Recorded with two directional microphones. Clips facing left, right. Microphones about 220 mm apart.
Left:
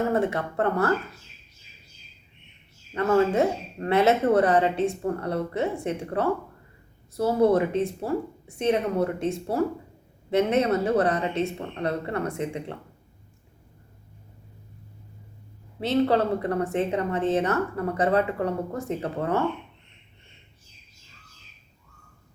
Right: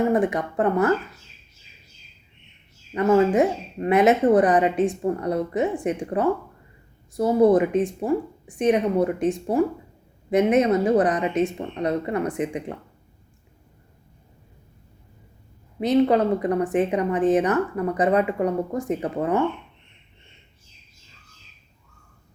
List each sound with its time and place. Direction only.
0.1 s speech: 15° right (ahead or behind)
2.9 s speech: 15° right (ahead or behind)
15.8 s speech: 15° right (ahead or behind)